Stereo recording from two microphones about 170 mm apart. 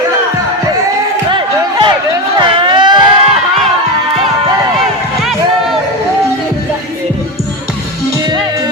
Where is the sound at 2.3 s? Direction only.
30° right (ahead or behind).